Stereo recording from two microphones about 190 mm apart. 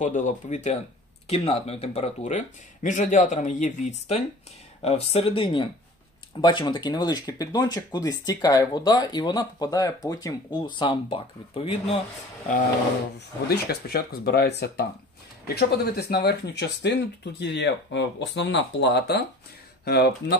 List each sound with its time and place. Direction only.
0.0 s speech: 40° left (ahead or behind)
13.5 s speech: 55° left (ahead or behind)